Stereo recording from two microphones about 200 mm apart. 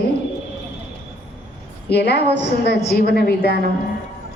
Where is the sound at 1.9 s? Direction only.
55° left (ahead or behind).